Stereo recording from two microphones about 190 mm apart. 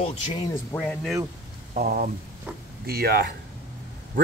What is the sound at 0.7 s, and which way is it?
Speech, centre (ahead or behind).